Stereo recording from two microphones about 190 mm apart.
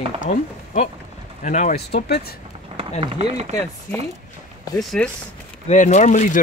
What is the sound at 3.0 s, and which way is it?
Speech, 30° right (ahead or behind).